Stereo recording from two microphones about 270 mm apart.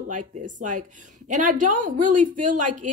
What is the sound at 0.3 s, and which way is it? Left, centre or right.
A woman's voice, right.